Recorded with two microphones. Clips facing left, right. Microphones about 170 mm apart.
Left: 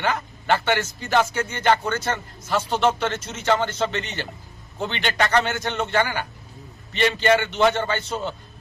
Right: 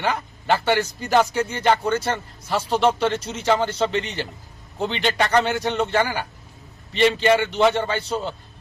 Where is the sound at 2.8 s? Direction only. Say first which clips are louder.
Right 2 dB; 10° right (ahead or behind).